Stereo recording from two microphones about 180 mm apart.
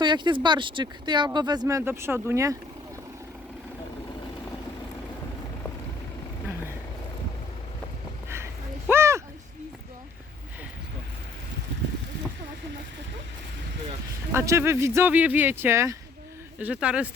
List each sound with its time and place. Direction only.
0.0 s speech: 25° right (ahead or behind)
8.9 s a sound: 15° right (ahead or behind)
14.3 s speech: 15° right (ahead or behind)